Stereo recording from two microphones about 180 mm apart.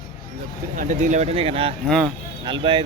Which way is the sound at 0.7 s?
45° right (ahead or behind).